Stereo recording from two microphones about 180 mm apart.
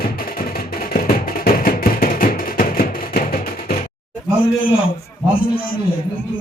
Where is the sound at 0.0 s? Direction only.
55° left (ahead or behind).